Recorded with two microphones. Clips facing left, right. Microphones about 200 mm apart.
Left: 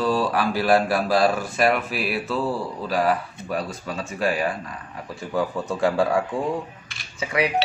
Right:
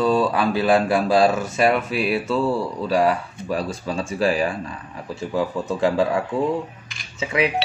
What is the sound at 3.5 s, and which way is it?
Speech, 30° right (ahead or behind).